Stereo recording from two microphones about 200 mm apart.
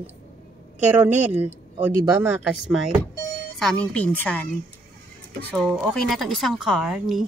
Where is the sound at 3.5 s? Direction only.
5° left (ahead or behind).